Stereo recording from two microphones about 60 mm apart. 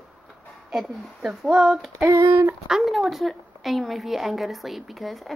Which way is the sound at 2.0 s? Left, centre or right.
Right.